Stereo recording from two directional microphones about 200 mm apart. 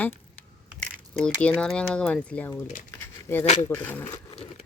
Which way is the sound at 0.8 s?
5° left (ahead or behind).